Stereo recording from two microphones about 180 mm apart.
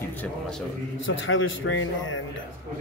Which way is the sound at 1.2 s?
90° left.